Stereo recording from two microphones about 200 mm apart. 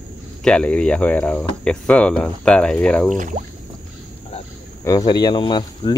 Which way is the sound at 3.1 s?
40° right (ahead or behind).